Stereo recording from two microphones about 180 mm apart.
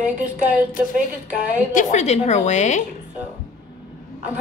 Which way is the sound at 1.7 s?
45° left (ahead or behind).